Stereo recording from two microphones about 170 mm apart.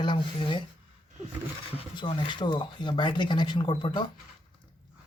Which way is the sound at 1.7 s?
30° left (ahead or behind).